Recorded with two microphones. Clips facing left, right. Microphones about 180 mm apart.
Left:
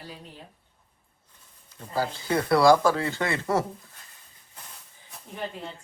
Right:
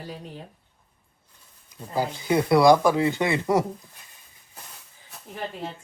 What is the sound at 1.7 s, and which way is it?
Speech, 15° right (ahead or behind).